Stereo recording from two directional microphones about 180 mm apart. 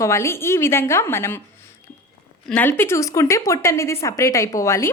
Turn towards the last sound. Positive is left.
turn(degrees=15)  # may be behind; listen again after turning